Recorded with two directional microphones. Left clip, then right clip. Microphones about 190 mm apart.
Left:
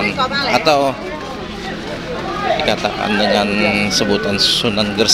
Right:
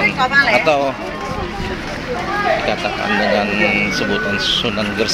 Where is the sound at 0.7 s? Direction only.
20° left (ahead or behind).